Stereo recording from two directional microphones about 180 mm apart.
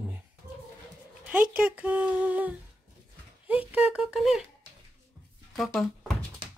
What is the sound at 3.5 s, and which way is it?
Speech, 10° right (ahead or behind).